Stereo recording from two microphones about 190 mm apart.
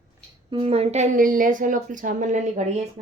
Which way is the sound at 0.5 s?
30° right (ahead or behind).